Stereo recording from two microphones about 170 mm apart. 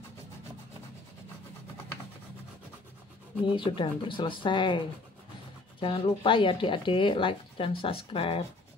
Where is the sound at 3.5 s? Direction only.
30° left (ahead or behind).